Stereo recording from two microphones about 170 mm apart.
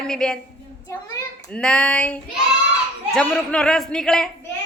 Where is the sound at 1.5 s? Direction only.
5° left (ahead or behind).